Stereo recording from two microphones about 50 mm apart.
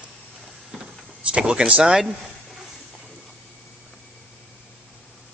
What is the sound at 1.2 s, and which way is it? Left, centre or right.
Speech, right.